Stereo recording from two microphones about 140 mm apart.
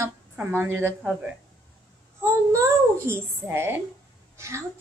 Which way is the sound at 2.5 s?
20° right (ahead or behind).